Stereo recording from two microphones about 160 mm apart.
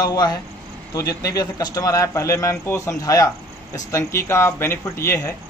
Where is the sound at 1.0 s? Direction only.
20° left (ahead or behind).